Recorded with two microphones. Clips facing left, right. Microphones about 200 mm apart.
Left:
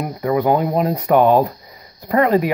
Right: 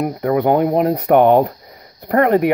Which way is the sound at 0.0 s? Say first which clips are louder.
Right 2 dB; 60° right (ahead or behind).